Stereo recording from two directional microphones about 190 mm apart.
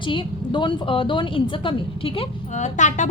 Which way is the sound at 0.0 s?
25° left (ahead or behind).